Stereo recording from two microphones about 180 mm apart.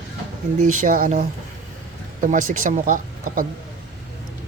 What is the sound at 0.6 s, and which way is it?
Speech, 45° right (ahead or behind).